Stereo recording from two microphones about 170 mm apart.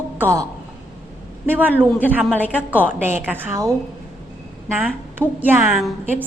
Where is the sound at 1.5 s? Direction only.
10° right (ahead or behind).